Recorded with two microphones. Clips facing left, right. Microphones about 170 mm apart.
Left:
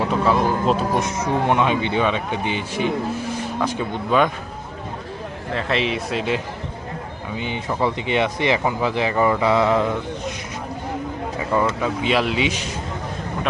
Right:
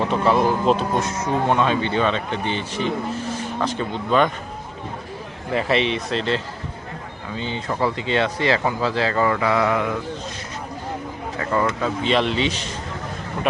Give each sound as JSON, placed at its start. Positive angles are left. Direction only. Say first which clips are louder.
{"t": 0.0, "sound": "speech", "louder": "right 1 dB", "side_deg": 0}
{"t": 0.9, "sound": "speech", "louder": "left 1 dB", "side_deg": 15}
{"t": 5.5, "sound": "speech", "louder": "right 2 dB", "side_deg": 0}
{"t": 11.6, "sound": "speech", "louder": "left 1 dB", "side_deg": 5}